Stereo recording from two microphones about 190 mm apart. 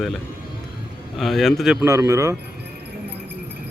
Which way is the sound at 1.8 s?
15° right (ahead or behind).